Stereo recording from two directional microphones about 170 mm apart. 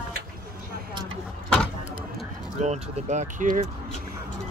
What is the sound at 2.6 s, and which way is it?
Speech, 40° right (ahead or behind).